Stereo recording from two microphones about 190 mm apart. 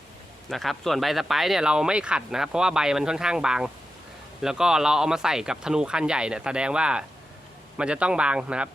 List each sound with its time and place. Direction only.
0.5 s speech: centre (ahead or behind)